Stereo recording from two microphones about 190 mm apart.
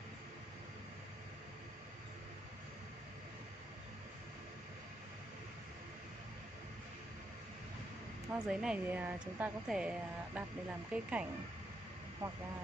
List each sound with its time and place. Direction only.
8.3 s a woman's voice: 5° right (ahead or behind)